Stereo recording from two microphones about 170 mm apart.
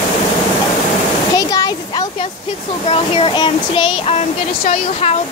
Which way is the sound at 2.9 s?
35° left (ahead or behind).